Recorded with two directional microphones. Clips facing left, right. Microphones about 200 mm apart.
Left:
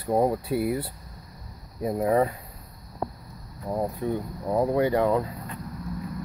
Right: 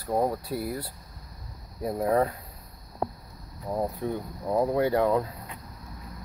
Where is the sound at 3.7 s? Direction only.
5° left (ahead or behind).